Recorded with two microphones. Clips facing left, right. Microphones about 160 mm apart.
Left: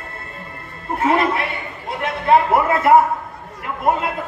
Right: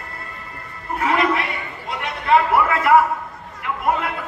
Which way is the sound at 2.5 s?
30° left (ahead or behind).